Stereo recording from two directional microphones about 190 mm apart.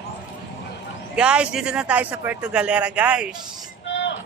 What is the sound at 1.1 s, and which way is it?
A man's voice, 5° right (ahead or behind).